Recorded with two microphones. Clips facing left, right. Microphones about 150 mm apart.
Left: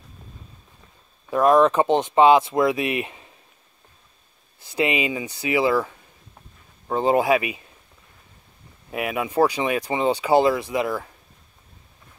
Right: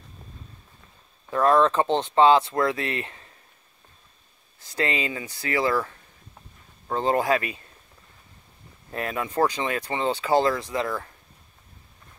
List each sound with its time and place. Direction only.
1.3 s speech: 15° left (ahead or behind)
4.6 s speech: 15° left (ahead or behind)
8.9 s speech: 10° left (ahead or behind)